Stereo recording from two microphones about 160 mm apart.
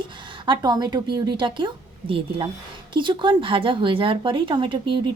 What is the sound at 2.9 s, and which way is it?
Speech, 30° right (ahead or behind).